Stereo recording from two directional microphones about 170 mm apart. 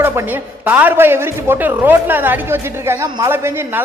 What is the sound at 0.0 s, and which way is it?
A woman's voice, 10° right (ahead or behind).